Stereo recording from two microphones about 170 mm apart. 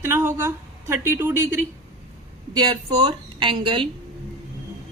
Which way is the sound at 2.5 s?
25° right (ahead or behind).